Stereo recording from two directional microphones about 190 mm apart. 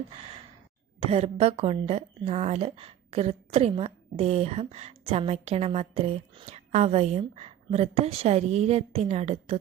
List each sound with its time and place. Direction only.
0.9 s a woman's voice: 30° right (ahead or behind)